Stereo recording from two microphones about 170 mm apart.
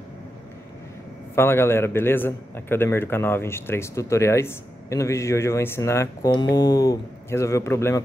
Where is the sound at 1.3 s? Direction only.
15° left (ahead or behind).